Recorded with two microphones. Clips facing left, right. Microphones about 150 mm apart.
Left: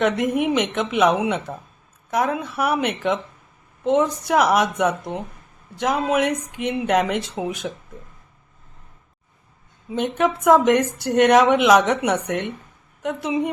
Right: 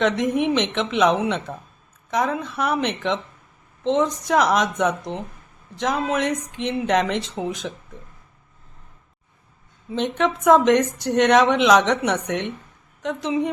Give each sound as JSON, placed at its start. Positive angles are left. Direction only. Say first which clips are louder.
{"t": 0.0, "sound": "speech", "louder": "even", "side_deg": 10}
{"t": 9.9, "sound": "speech", "louder": "left 1 dB", "side_deg": 10}